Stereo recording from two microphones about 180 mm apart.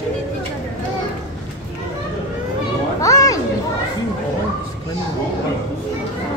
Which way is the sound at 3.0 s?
20° left (ahead or behind).